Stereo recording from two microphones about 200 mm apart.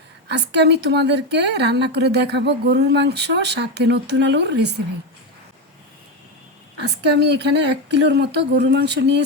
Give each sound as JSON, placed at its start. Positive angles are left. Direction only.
{"t": 0.3, "sound": "a woman's voice", "side_deg": -60}
{"t": 6.8, "sound": "a woman's voice", "side_deg": -55}